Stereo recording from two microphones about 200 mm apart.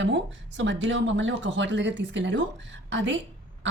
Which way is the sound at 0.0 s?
65° right (ahead or behind).